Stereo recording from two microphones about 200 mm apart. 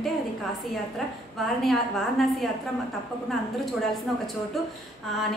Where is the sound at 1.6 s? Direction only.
Centre (ahead or behind).